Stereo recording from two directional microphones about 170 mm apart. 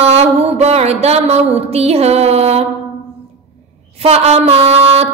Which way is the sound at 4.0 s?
40° right (ahead or behind).